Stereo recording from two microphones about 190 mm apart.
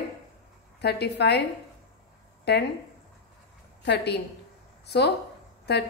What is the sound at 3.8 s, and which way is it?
Speech, 65° left (ahead or behind).